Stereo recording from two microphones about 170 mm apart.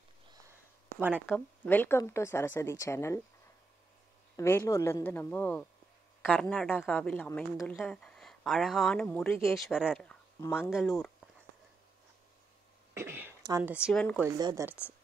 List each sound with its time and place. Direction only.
0.9 s speech: 10° right (ahead or behind)
1.3 s speech: 10° left (ahead or behind)
4.4 s speech: 15° left (ahead or behind)
9.5 s speech: centre (ahead or behind)
10.4 s speech: 15° left (ahead or behind)
10.7 s speech: centre (ahead or behind)
12.9 s a sound: 15° right (ahead or behind)
13.7 s speech: 5° right (ahead or behind)
13.9 s speech: 10° left (ahead or behind)
14.2 s speech: 20° right (ahead or behind)